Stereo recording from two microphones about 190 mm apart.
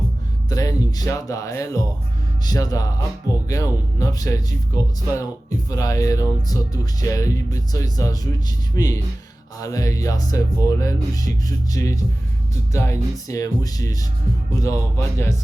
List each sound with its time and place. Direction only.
0.5 s speech: 20° left (ahead or behind)